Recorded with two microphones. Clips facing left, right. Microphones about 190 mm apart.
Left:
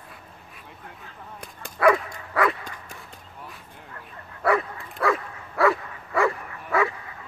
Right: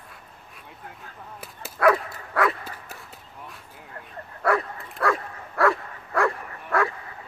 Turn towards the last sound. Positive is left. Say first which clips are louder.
# left 1 dB
turn(degrees=0)  # may be behind; listen again after turning